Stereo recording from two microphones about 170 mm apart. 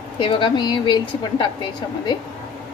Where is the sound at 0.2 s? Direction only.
30° left (ahead or behind).